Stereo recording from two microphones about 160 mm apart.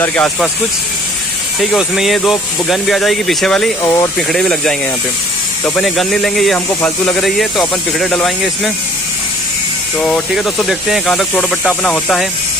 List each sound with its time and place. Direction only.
0.0 s speech: 5° left (ahead or behind)
1.6 s speech: centre (ahead or behind)
3.8 s speech: 20° left (ahead or behind)
4.3 s speech: 5° left (ahead or behind)
5.8 s speech: centre (ahead or behind)
9.9 s speech: 5° left (ahead or behind)